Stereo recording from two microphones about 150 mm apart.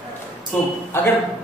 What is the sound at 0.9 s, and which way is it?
Speech, 15° left (ahead or behind).